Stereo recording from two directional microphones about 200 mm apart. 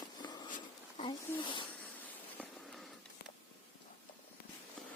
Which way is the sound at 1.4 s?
25° left (ahead or behind).